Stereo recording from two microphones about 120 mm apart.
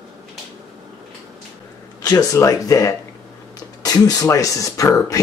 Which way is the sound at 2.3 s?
30° left (ahead or behind).